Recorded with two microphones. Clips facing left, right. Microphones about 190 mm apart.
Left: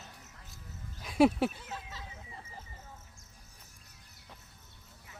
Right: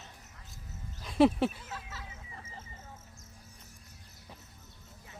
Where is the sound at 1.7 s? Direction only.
15° left (ahead or behind).